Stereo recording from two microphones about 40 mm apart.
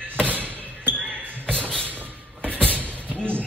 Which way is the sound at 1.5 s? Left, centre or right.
Left.